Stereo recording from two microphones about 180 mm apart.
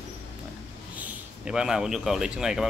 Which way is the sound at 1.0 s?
5° right (ahead or behind).